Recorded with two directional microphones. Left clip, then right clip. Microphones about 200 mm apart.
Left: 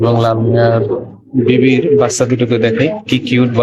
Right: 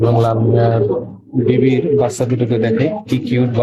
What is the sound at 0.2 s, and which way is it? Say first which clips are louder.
A man's voice: left 3 dB; 5° right (ahead or behind).